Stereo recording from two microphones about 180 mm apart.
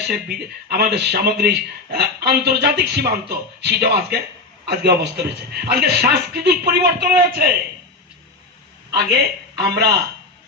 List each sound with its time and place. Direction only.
0.0 s speech: 65° right (ahead or behind)
8.9 s speech: 65° right (ahead or behind)